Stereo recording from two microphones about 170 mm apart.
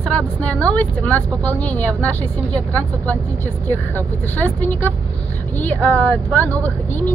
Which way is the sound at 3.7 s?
10° left (ahead or behind).